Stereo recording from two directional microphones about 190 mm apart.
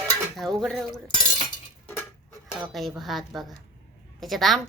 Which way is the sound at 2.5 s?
Centre (ahead or behind).